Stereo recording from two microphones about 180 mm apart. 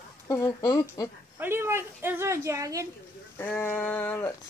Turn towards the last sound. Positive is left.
turn(degrees=10)  # may be behind; listen again after turning